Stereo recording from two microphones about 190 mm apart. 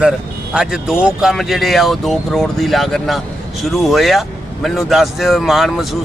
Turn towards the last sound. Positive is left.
turn(degrees=0)  # may be behind; listen again after turning